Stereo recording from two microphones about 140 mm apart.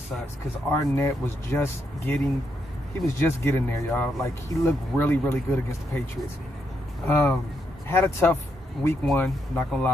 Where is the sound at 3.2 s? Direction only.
15° left (ahead or behind).